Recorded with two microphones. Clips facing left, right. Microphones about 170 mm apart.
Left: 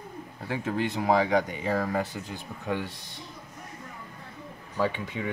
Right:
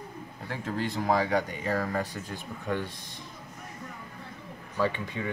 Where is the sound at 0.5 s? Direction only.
15° left (ahead or behind).